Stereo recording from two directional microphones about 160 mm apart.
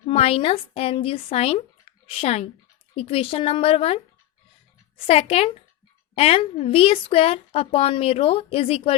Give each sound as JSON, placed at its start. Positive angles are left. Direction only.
{"t": 0.0, "sound": "speech", "side_deg": 35}
{"t": 5.0, "sound": "speech", "side_deg": 40}